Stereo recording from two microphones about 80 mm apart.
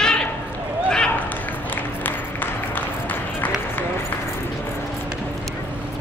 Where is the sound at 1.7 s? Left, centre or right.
Left.